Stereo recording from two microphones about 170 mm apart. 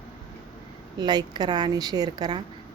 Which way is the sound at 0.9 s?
25° right (ahead or behind).